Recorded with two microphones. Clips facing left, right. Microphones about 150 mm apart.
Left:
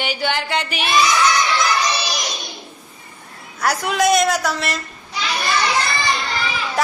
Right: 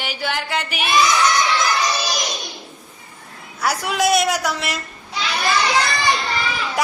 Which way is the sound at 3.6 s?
5° right (ahead or behind).